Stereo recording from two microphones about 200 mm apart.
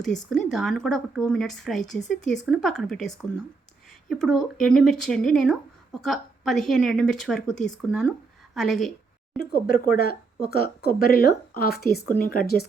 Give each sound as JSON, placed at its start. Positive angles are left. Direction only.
{"t": 0.0, "sound": "speech", "side_deg": 0}
{"t": 9.4, "sound": "speech", "side_deg": 50}